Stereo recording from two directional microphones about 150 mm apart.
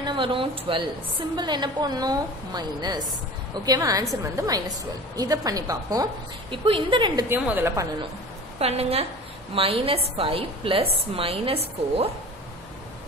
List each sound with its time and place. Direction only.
0.0 s a woman's voice: 35° right (ahead or behind)
6.5 s a woman's voice: 35° right (ahead or behind)
7.2 s a woman's voice: 10° right (ahead or behind)
8.5 s a woman's voice: 45° right (ahead or behind)